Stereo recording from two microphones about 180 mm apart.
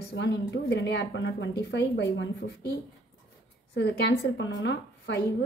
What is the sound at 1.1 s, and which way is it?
A woman's voice, 85° left.